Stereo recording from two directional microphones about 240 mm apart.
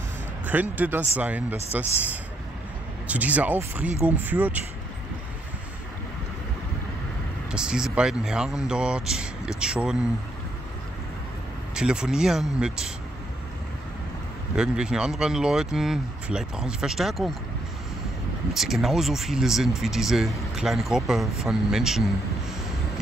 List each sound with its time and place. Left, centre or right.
0.5 s speech: centre
3.1 s speech: centre
7.5 s speech: centre
11.7 s speech: centre
14.5 s speech: centre
18.5 s speech: centre